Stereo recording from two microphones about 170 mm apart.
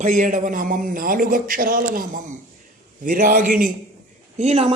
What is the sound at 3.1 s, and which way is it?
Speech, 50° right (ahead or behind).